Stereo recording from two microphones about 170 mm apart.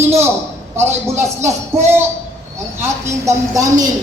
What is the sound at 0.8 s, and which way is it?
Speech, 15° right (ahead or behind).